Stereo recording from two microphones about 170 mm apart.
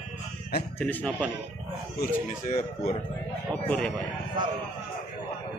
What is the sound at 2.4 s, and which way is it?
Speech, 45° left (ahead or behind).